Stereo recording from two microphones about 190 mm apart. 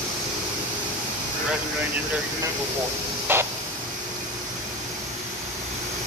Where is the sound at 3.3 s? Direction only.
10° right (ahead or behind).